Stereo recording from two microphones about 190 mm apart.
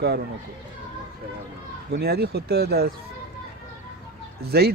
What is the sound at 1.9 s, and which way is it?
Speech, 55° right (ahead or behind).